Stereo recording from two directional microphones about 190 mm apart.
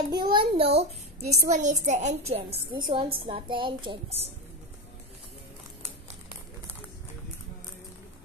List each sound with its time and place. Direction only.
0.1 s child singing: 25° right (ahead or behind)
1.3 s a woman's voice: 45° right (ahead or behind); by 4.3 s 30° right (ahead or behind)